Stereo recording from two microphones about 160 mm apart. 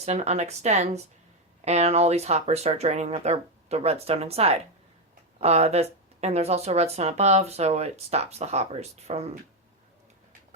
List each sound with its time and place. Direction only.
0.0 s speech: 45° right (ahead or behind)